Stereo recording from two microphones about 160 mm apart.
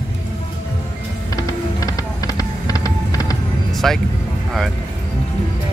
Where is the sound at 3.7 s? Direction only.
Centre (ahead or behind).